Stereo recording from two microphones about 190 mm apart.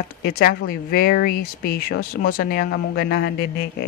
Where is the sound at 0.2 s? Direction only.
50° left (ahead or behind).